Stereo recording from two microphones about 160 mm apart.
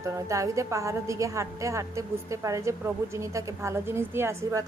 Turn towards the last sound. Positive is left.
turn(degrees=-20)  # may be behind; listen again after turning